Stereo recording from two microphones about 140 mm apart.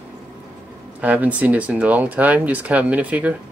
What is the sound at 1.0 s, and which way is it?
Speech, 10° right (ahead or behind).